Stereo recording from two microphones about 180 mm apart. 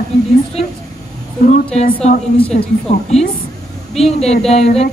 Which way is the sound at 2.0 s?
35° left (ahead or behind).